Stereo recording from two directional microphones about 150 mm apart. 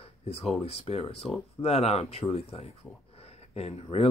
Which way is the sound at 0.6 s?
40° left (ahead or behind).